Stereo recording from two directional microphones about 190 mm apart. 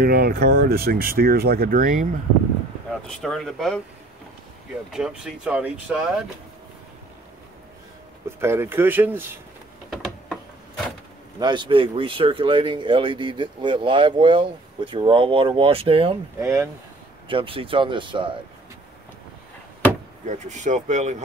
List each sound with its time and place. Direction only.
0.0 s speech: 55° right (ahead or behind)
3.2 s speech: centre (ahead or behind)
4.9 s speech: 5° right (ahead or behind)
8.3 s speech: 15° right (ahead or behind)
9.8 s a sound: centre (ahead or behind)
11.3 s speech: 25° right (ahead or behind)
16.3 s speech: 15° right (ahead or behind)
17.3 s speech: 30° right (ahead or behind)
20.2 s speech: 40° right (ahead or behind)